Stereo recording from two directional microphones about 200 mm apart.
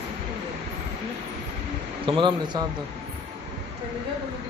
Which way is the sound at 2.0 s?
25° right (ahead or behind).